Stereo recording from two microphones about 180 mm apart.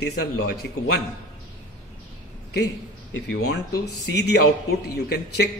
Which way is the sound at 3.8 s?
65° left (ahead or behind).